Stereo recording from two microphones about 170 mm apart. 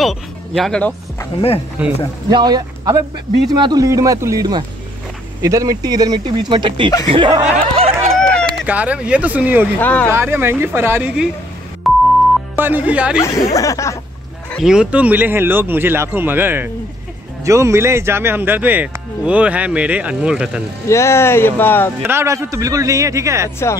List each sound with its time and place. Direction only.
0.0 s speech: centre (ahead or behind)
1.8 s speech: 10° right (ahead or behind)
2.2 s a man's voice: 25° right (ahead or behind)
7.1 s a sound: 30° right (ahead or behind)
8.6 s speech: 10° right (ahead or behind)
9.8 s speech: 10° left (ahead or behind)
10.0 s speech: 15° right (ahead or behind)
11.9 s music: centre (ahead or behind)
12.5 s speech: 10° right (ahead or behind)
13.2 s speech: 20° left (ahead or behind)
14.6 s speech: 5° right (ahead or behind)
20.9 s speech: 15° left (ahead or behind)
22.0 s speech: 15° right (ahead or behind)